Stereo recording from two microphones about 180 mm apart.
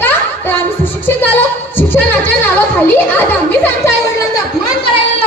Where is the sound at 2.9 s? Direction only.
10° left (ahead or behind).